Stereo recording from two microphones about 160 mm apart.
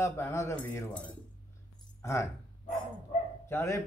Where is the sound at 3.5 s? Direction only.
15° left (ahead or behind).